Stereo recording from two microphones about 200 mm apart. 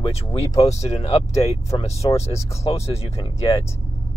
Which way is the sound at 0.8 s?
30° left (ahead or behind).